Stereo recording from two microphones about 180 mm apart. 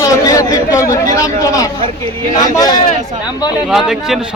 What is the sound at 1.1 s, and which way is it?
Speech, 20° left (ahead or behind).